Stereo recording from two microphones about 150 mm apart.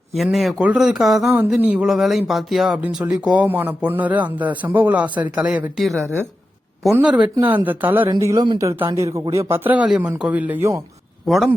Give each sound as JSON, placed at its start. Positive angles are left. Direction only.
{"t": 0.1, "sound": "speech", "side_deg": 0}
{"t": 8.2, "sound": "a man's voice", "side_deg": -25}
{"t": 11.3, "sound": "speech", "side_deg": 0}